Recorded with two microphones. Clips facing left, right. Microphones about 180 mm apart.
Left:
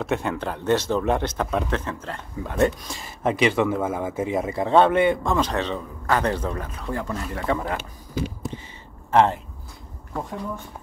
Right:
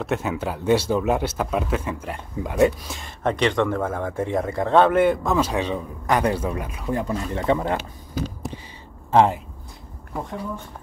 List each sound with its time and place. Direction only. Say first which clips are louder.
0.0 s speech: even; centre (ahead or behind)
2.6 s speech: right 3 dB; centre (ahead or behind); by 7.7 s 20° right (ahead or behind)
9.1 s speech: right 1 dB; 15° right (ahead or behind)